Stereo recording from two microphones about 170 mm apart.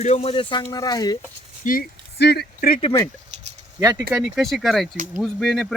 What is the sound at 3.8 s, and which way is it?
Speech, 20° right (ahead or behind).